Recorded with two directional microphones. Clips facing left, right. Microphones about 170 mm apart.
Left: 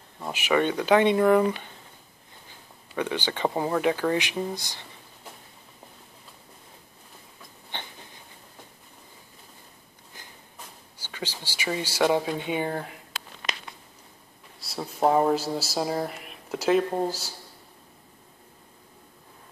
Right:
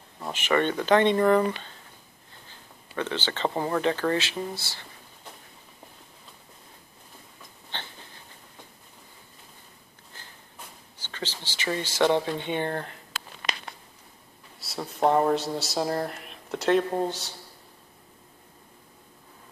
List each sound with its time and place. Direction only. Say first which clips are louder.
0.2 s speech: left 1 dB; 10° left (ahead or behind)
3.0 s speech: left 2 dB; 10° left (ahead or behind)
7.7 s a sound: left 1 dB; 15° left (ahead or behind)
10.1 s a sound: left 1 dB; 15° left (ahead or behind)
11.0 s speech: even; 10° left (ahead or behind)
14.6 s speech: even; centre (ahead or behind)